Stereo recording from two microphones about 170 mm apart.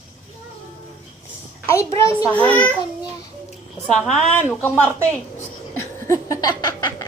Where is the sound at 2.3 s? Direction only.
5° left (ahead or behind).